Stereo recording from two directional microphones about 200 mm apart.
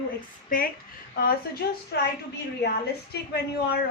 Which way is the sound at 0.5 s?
45° left (ahead or behind).